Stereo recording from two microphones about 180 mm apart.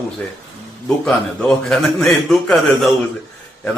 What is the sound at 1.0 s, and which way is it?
A man's voice, 5° left (ahead or behind).